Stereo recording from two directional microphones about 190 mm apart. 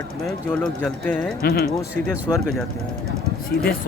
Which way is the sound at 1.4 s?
55° left (ahead or behind).